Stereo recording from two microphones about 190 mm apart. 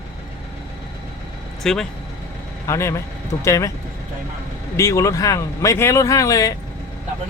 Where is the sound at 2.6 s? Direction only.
15° left (ahead or behind).